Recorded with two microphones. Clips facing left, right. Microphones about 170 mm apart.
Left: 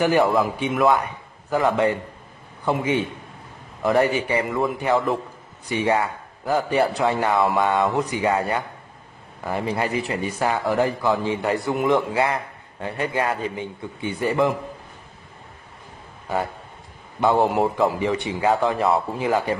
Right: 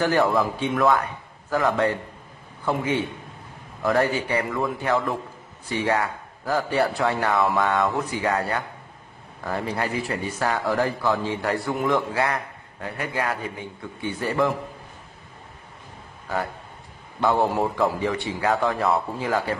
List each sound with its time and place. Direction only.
0.0 s speech: 15° left (ahead or behind)
17.5 s speech: 20° left (ahead or behind)